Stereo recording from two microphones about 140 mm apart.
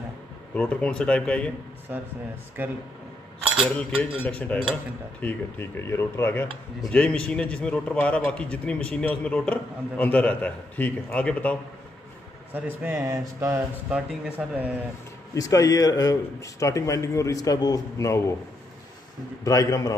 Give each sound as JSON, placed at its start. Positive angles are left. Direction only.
{"t": 0.6, "sound": "speech", "side_deg": 10}
{"t": 3.5, "sound": "speech", "side_deg": 5}
{"t": 12.5, "sound": "speech", "side_deg": -15}
{"t": 13.8, "sound": "speech", "side_deg": -10}
{"t": 15.3, "sound": "speech", "side_deg": 25}
{"t": 19.4, "sound": "speech", "side_deg": 25}